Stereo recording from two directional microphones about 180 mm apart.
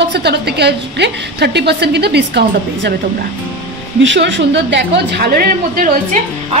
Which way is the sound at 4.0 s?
85° right.